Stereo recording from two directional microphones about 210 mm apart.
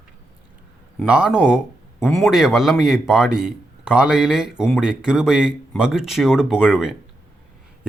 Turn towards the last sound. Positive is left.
turn(degrees=-5)  # may be behind; listen again after turning